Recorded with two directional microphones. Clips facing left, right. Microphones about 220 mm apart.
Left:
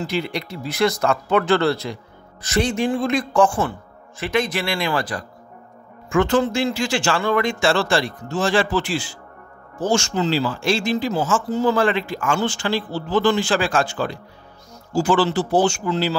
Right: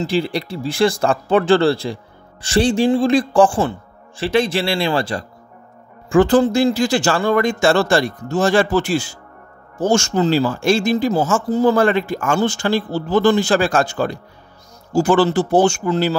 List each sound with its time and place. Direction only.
0.0 s a man's voice: 30° right (ahead or behind); by 16.2 s 50° right (ahead or behind)